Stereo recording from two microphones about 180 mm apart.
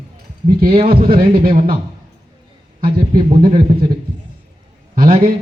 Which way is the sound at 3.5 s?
35° right (ahead or behind).